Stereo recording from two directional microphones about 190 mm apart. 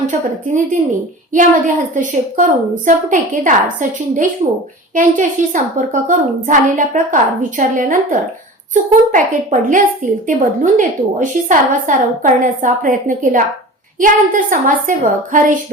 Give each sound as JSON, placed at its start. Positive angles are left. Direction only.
{"t": 0.1, "sound": "a woman's voice", "side_deg": -40}